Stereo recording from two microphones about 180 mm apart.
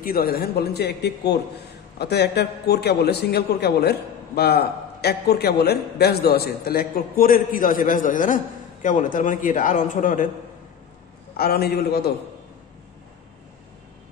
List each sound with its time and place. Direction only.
0.0 s a man's voice: 55° left (ahead or behind)
11.3 s a man's voice: 60° left (ahead or behind)